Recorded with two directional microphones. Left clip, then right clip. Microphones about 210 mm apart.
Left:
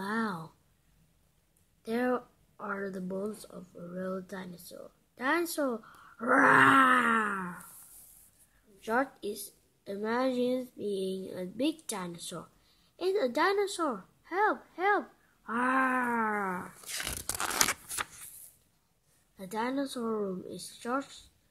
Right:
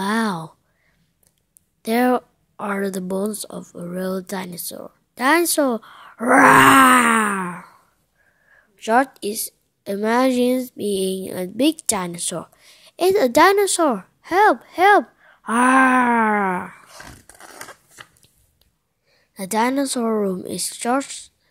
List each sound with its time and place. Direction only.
0.0 s a sound: 35° right (ahead or behind)
1.8 s speech: 35° right (ahead or behind)
8.7 s speech: 35° right (ahead or behind)
17.3 s crumpling: 35° left (ahead or behind)
19.3 s speech: 35° right (ahead or behind)